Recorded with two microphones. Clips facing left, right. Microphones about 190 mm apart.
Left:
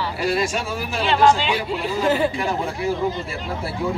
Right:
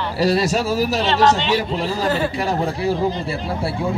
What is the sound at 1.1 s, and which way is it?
Speech, 5° left (ahead or behind).